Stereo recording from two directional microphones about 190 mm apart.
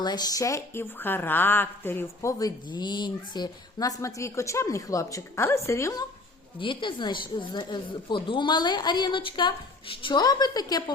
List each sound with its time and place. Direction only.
0.0 s a woman's voice: 20° left (ahead or behind)